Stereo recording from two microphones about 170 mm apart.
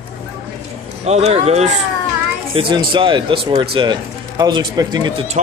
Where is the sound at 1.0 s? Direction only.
40° right (ahead or behind).